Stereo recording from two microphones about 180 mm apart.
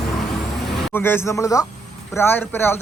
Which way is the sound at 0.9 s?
10° left (ahead or behind).